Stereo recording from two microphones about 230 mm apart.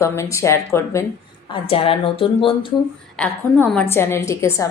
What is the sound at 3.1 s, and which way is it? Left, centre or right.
A woman's voice, centre.